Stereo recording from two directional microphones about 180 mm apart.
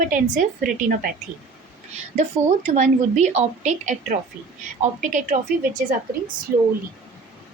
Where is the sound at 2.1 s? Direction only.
40° right (ahead or behind).